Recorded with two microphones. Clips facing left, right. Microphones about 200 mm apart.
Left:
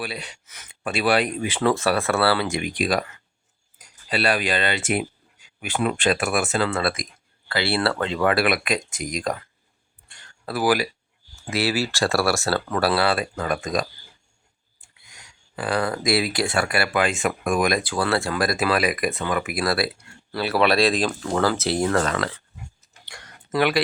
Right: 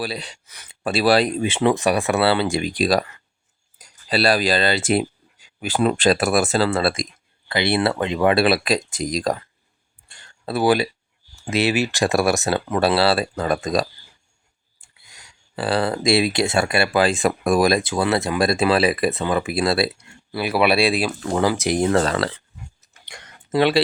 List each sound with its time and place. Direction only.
0.0 s speech: 35° right (ahead or behind)
10.1 s a sound: 25° right (ahead or behind)
11.5 s speech: 20° right (ahead or behind)
15.5 s speech: 30° right (ahead or behind)
20.3 s speech: 10° right (ahead or behind)
22.0 s speech: 30° right (ahead or behind)
23.0 s a sound: 20° right (ahead or behind)